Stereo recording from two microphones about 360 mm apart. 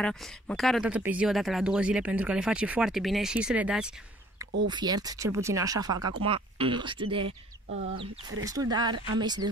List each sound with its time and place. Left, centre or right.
0.0 s speech: centre
8.5 s speech: centre